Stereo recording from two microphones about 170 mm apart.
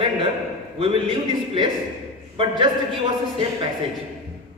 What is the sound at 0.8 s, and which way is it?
A man's voice, 30° right (ahead or behind).